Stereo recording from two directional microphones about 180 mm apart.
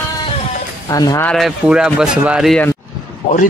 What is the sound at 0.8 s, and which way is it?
Speech, 20° left (ahead or behind).